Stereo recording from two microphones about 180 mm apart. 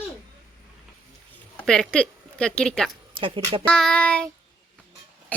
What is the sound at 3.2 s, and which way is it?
Speech, 30° right (ahead or behind).